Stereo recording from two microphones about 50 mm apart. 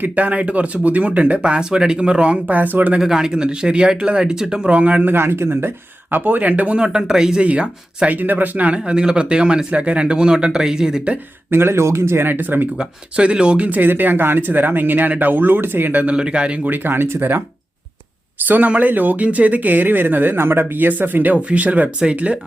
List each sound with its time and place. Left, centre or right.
0.0 s speech: right
3.0 s speech: centre
4.7 s speech: right
5.1 s speech: right
6.7 s speech: centre
8.1 s speech: right; by 11.1 s centre
11.5 s speech: right
12.8 s speech: centre
13.7 s speech: right
16.0 s speech: centre
16.6 s speech: right
18.4 s speech: right